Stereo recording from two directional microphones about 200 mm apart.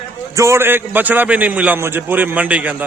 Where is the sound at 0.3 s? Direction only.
15° right (ahead or behind).